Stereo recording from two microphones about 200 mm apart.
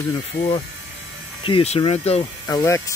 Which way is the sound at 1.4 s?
30° left (ahead or behind).